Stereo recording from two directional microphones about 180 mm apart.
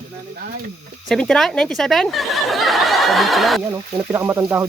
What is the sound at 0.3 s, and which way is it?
Speech, 55° right (ahead or behind).